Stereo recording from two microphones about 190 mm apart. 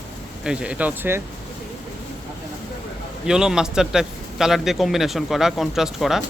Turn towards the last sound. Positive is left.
turn(degrees=0)  # may be behind; listen again after turning